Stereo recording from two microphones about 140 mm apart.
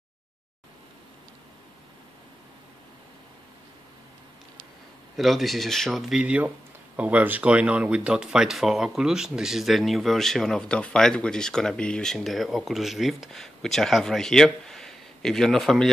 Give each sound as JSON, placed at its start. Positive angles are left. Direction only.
{"t": 5.1, "sound": "speech", "side_deg": 0}